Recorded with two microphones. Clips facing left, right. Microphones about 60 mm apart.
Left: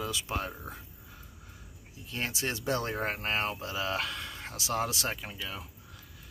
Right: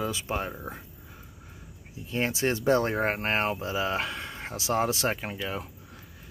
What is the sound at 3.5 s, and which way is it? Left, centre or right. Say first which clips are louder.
Speech: right 4 dB; right.